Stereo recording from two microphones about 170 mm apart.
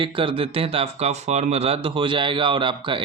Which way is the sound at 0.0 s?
30° right (ahead or behind).